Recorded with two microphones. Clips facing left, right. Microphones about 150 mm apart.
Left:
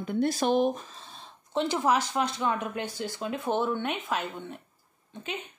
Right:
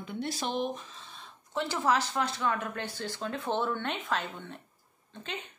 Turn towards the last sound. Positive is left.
turn(degrees=10)  # may be behind; listen again after turning